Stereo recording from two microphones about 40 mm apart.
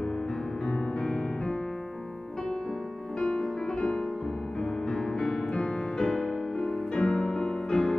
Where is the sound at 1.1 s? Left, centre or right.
Centre.